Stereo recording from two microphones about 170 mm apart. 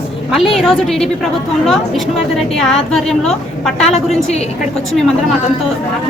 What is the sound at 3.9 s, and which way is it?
Speech, 40° left (ahead or behind).